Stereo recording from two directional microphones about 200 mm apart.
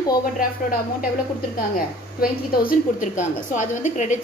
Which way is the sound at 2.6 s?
45° left (ahead or behind).